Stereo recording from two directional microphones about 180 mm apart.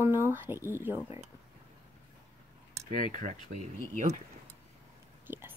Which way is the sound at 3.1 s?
45° right (ahead or behind).